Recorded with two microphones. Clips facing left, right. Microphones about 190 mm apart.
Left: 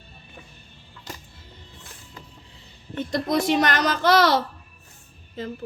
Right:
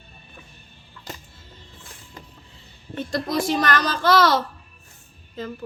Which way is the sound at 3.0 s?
20° left (ahead or behind).